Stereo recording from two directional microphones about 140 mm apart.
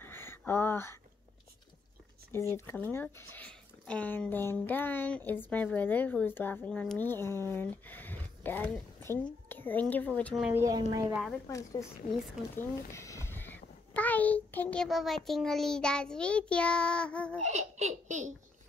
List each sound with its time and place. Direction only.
0.0 s a sound: 15° left (ahead or behind)
2.3 s a woman's voice: 20° left (ahead or behind)
10.5 s a woman's voice: 25° right (ahead or behind)
11.4 s a woman's voice: 25° left (ahead or behind)
12.9 s a child's voice: 20° left (ahead or behind)
17.5 s baby laughter: 55° right (ahead or behind)